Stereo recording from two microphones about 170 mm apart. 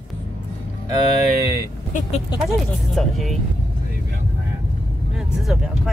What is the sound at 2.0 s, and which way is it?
Speech, 40° left (ahead or behind).